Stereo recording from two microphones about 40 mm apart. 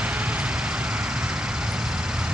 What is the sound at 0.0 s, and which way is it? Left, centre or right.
Vehicle, right.